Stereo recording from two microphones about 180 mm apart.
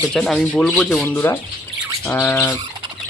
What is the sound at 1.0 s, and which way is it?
Speech, 15° left (ahead or behind).